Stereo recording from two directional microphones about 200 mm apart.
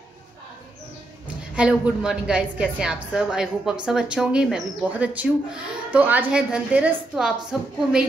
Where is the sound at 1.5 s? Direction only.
5° right (ahead or behind).